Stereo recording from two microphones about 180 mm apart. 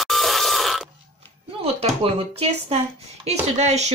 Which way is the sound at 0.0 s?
Centre (ahead or behind).